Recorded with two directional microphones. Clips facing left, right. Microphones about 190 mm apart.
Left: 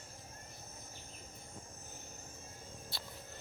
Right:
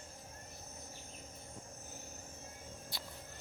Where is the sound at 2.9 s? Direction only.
15° right (ahead or behind).